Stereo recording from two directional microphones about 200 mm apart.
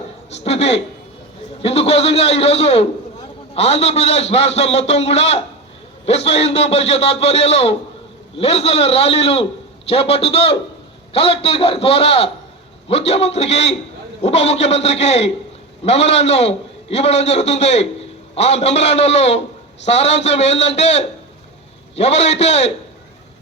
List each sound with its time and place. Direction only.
0.3 s a man's voice: 30° left (ahead or behind)